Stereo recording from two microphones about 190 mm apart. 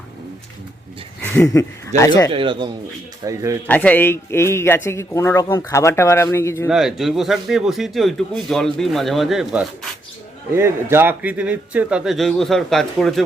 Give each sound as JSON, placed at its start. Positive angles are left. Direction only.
{"t": 1.4, "sound": "a man's voice", "side_deg": 15}
{"t": 2.3, "sound": "a man's voice", "side_deg": -25}
{"t": 3.7, "sound": "a man's voice", "side_deg": 10}
{"t": 6.7, "sound": "speech", "side_deg": 0}